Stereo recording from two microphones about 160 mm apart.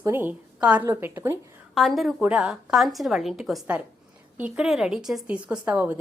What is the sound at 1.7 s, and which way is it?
A woman's voice, centre (ahead or behind).